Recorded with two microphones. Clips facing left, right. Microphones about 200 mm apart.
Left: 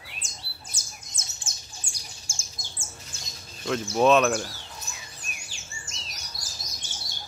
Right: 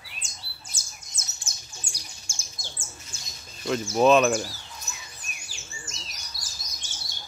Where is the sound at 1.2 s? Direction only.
50° left (ahead or behind).